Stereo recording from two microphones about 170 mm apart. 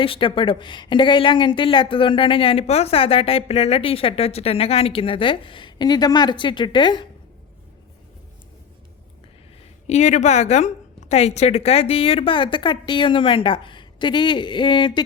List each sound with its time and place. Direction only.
0.0 s a woman's voice: 30° left (ahead or behind)
9.8 s a woman's voice: 40° left (ahead or behind); by 15.0 s 25° left (ahead or behind)